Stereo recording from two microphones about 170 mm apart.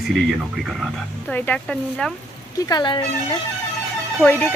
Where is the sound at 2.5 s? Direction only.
25° left (ahead or behind).